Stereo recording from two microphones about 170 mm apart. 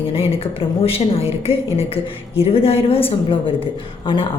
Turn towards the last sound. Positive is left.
turn(degrees=30)  # may be behind; listen again after turning